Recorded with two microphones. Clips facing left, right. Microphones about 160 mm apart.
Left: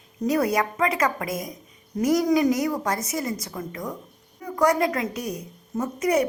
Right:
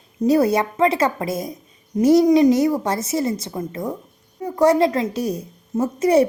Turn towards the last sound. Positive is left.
turn(degrees=-30)  # may be behind; listen again after turning